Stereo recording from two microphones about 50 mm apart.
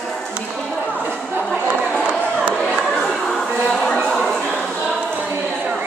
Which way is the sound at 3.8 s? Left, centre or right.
Left.